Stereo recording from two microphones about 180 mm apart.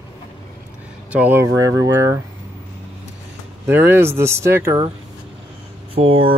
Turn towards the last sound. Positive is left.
turn(degrees=-30)  # may be behind; listen again after turning